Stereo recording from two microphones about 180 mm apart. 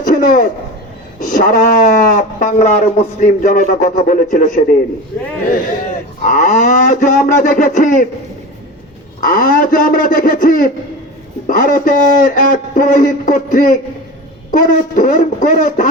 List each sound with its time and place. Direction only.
0.0 s a sound: 45° left (ahead or behind)
1.2 s speech: 45° left (ahead or behind)
6.2 s speech: 45° left (ahead or behind)
9.2 s speech: 50° left (ahead or behind)